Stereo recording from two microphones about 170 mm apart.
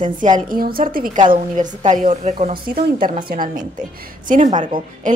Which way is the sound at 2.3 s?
30° right (ahead or behind).